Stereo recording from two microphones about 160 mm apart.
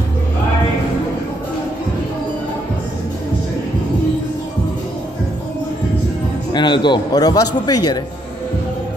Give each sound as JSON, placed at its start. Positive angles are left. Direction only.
{"t": 6.5, "sound": "a man's voice", "side_deg": 30}